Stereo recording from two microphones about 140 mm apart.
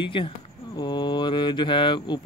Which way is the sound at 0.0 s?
35° left (ahead or behind).